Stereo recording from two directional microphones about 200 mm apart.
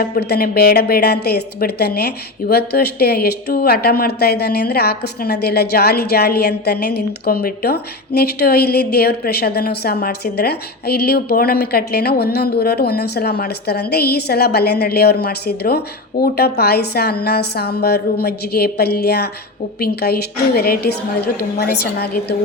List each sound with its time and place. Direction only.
0.0 s a woman's voice: 50° left (ahead or behind)